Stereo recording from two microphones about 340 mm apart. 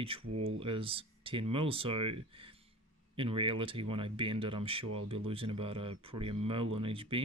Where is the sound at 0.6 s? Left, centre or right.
Centre.